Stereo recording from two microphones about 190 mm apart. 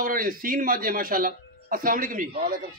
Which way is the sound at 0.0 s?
45° right (ahead or behind).